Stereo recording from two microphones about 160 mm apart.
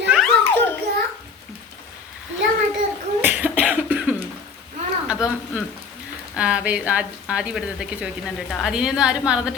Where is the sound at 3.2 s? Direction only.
10° right (ahead or behind).